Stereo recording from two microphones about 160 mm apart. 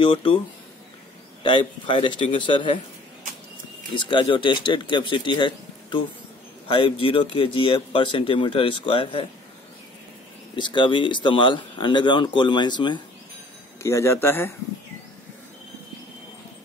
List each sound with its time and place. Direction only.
0.0 s speech: 30° left (ahead or behind)
1.4 s speech: 30° left (ahead or behind)
3.9 s speech: 30° left (ahead or behind)
10.5 s speech: 30° left (ahead or behind)
13.8 s speech: 15° left (ahead or behind)